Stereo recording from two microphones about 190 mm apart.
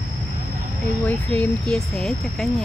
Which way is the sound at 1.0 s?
5° left (ahead or behind).